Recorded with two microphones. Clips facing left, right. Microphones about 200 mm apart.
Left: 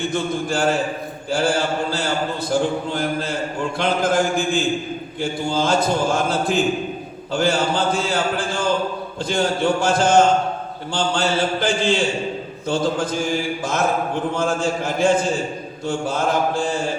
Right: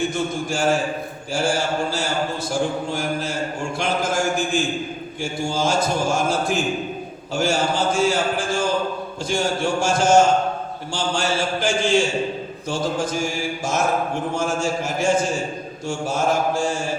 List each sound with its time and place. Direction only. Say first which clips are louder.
0.1 s mantra: left 2 dB; 55° left (ahead or behind)